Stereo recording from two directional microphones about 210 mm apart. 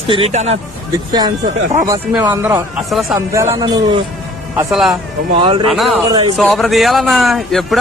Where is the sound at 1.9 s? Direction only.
15° right (ahead or behind).